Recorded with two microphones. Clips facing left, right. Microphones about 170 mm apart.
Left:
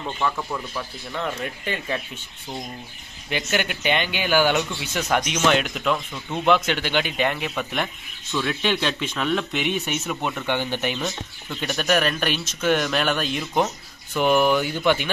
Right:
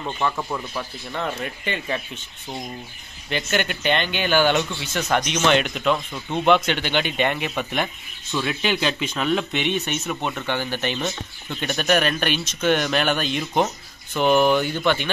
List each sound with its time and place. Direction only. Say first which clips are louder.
0.2 s speech: right 1 dB; 10° right (ahead or behind)
3.3 s speech: right 1 dB; 10° left (ahead or behind)
10.4 s speech: left 1 dB; 15° left (ahead or behind)
11.6 s speech: right 1 dB; centre (ahead or behind)